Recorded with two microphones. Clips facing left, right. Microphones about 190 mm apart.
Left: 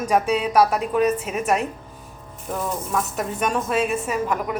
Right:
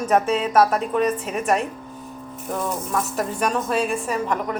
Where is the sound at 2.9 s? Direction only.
Centre (ahead or behind).